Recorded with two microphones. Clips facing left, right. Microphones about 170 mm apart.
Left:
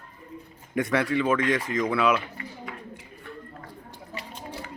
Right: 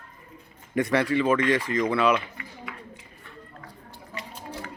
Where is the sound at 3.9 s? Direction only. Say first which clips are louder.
Right 1 dB; 20° left (ahead or behind).